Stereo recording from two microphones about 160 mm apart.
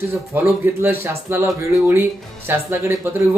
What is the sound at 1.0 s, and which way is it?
Speech, 15° right (ahead or behind).